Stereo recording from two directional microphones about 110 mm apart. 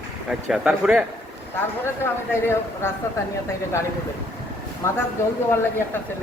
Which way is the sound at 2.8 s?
25° left (ahead or behind).